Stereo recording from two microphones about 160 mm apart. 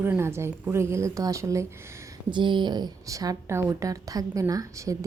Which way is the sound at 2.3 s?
30° right (ahead or behind).